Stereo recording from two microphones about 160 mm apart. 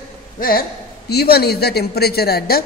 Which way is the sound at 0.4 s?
65° left (ahead or behind).